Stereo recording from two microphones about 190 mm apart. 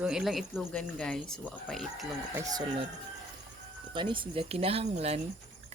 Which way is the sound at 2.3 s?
20° right (ahead or behind).